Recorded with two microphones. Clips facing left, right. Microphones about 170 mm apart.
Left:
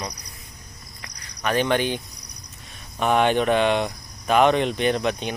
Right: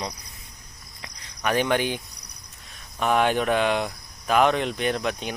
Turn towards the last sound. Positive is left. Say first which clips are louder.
# left 3 dB
turn(degrees=0)  # may be behind; listen again after turning